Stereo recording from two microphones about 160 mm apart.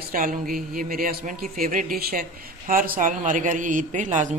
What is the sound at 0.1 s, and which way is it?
A man's voice, 60° right (ahead or behind).